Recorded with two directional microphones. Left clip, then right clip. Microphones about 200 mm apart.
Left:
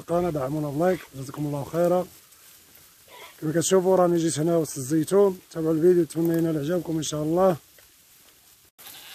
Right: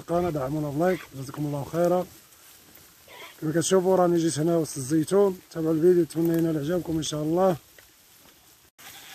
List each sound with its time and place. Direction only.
0.0 s speech: 5° left (ahead or behind)
3.1 s a sound: 45° right (ahead or behind)
3.3 s speech: 5° left (ahead or behind)